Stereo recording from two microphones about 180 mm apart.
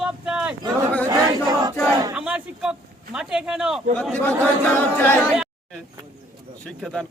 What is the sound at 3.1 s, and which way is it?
Speech, 5° right (ahead or behind).